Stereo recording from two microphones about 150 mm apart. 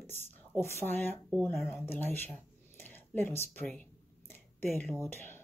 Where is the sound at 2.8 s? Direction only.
15° left (ahead or behind).